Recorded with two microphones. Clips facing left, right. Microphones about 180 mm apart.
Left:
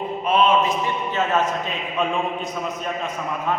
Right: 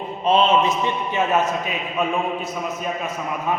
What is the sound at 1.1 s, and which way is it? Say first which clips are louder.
Speech: right 1 dB; 10° right (ahead or behind).